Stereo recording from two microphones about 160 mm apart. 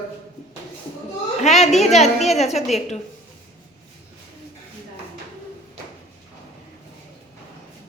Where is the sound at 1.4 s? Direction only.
45° left (ahead or behind).